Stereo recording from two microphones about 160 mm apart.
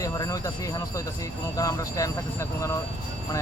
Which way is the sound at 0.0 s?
20° left (ahead or behind).